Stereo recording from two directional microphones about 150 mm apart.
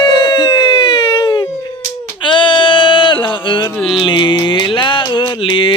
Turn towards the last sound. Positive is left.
turn(degrees=35)  # may be behind; listen again after turning